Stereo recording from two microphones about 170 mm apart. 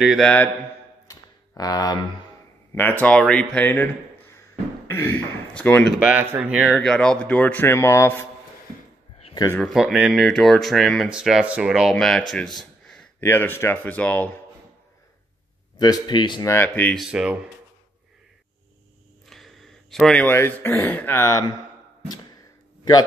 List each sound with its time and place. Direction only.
0.0 s speech: centre (ahead or behind)
1.0 s a sound: 20° left (ahead or behind)
2.7 s speech: 10° left (ahead or behind)
5.9 s speech: 5° right (ahead or behind); by 8.3 s 15° left (ahead or behind)
9.2 s a sound: 25° left (ahead or behind)
9.6 s speech: centre (ahead or behind)
12.5 s a sound: 5° left (ahead or behind)
13.2 s speech: 10° left (ahead or behind)
15.8 s speech: 25° left (ahead or behind)
16.5 s speech: 10° left (ahead or behind); by 17.4 s 5° right (ahead or behind)
19.2 s speech: centre (ahead or behind); by 21.5 s 20° left (ahead or behind)